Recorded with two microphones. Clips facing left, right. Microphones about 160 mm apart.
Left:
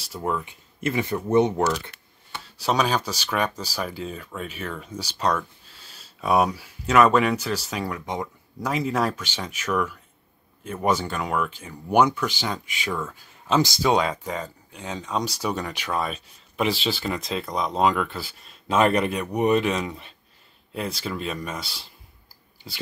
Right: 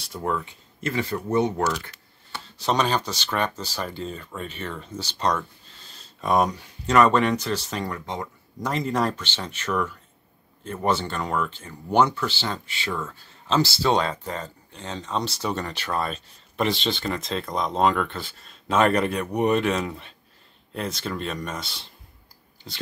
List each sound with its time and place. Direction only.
0.0 s speech: 5° left (ahead or behind)
8.5 s speech: 5° left (ahead or behind)